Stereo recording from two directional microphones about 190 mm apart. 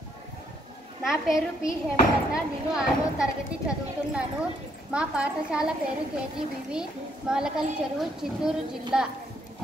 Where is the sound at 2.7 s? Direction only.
5° right (ahead or behind).